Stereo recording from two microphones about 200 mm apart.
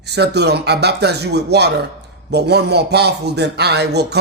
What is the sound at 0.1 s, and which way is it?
A man's voice, 55° right (ahead or behind).